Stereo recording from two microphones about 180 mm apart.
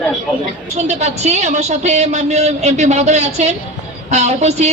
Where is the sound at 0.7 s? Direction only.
40° right (ahead or behind).